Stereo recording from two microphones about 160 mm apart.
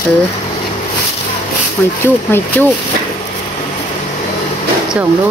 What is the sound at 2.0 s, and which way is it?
Speech, 15° left (ahead or behind).